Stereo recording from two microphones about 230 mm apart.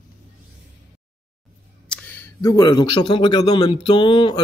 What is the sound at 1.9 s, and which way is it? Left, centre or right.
A man's voice, centre.